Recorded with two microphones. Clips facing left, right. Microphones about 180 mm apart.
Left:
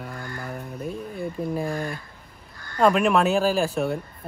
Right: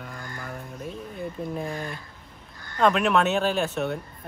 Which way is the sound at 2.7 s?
5° left (ahead or behind).